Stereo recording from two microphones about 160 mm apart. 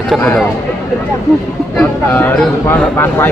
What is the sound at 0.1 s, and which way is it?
Speech, centre (ahead or behind).